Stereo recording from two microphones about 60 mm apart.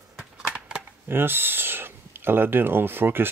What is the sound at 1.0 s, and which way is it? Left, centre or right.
Speech, right.